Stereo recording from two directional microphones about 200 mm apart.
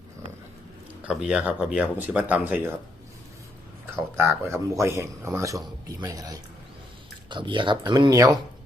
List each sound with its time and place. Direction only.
1.0 s a man's voice: 5° right (ahead or behind)
3.9 s a man's voice: 10° right (ahead or behind)